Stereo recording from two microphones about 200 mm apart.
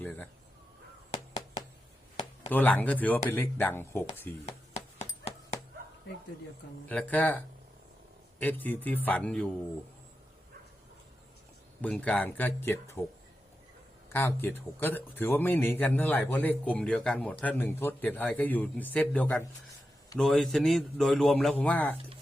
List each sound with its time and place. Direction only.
1.1 s a sound: 30° left (ahead or behind)
2.5 s speech: 10° left (ahead or behind)
4.4 s a sound: 30° left (ahead or behind)
6.8 s speech: 10° left (ahead or behind)
11.8 s speech: 5° left (ahead or behind)
14.1 s a man's voice: 10° left (ahead or behind)